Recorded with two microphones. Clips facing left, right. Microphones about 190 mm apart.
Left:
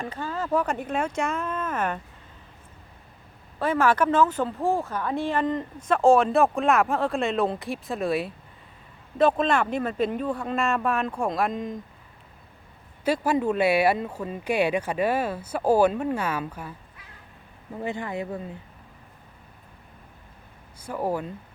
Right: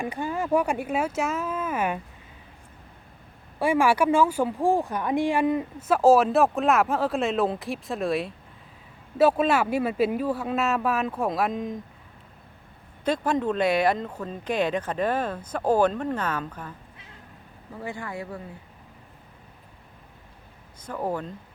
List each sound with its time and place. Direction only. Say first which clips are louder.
0.0 s speech: right 2 dB; 15° right (ahead or behind)
3.6 s speech: right 1 dB; 10° right (ahead or behind)
13.1 s speech: left 1 dB; 10° left (ahead or behind)
17.7 s speech: left 4 dB; 20° left (ahead or behind)
20.8 s speech: left 2 dB; 10° left (ahead or behind)